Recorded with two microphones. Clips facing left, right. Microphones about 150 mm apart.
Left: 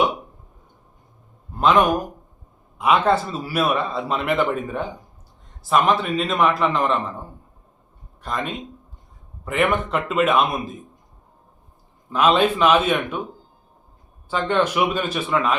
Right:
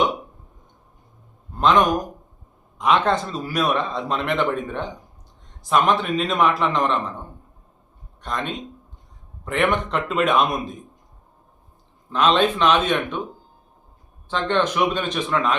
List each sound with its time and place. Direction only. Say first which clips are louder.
1.5 s a man's voice: left 1 dB; 10° left (ahead or behind)
8.2 s a man's voice: even; 5° left (ahead or behind)
12.1 s a man's voice: left 1 dB; 10° left (ahead or behind)
14.3 s a man's voice: left 1 dB; 10° left (ahead or behind)